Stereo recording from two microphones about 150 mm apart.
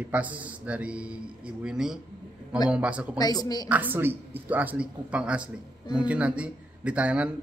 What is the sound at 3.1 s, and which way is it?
Speech, 25° left (ahead or behind).